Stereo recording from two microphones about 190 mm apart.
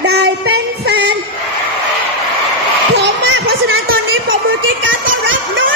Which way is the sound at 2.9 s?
65° right (ahead or behind).